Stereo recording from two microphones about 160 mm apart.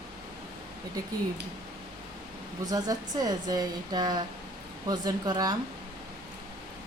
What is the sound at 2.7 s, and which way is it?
Speech, 25° right (ahead or behind).